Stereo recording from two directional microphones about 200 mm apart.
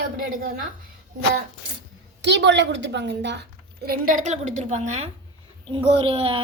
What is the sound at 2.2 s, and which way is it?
Speech, 60° right (ahead or behind).